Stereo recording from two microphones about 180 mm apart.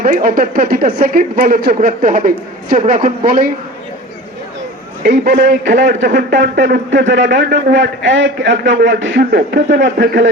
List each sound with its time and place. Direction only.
0.0 s speech: 50° right (ahead or behind)
5.0 s a man's voice: 60° right (ahead or behind)
6.1 s a man's voice: 55° right (ahead or behind); by 10.2 s 70° right (ahead or behind)